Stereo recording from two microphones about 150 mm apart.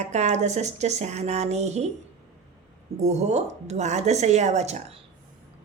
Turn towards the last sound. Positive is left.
turn(degrees=-50)  # may be behind; listen again after turning